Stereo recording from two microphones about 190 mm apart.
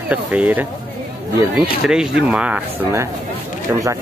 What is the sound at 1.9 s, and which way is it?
Speech, 5° right (ahead or behind).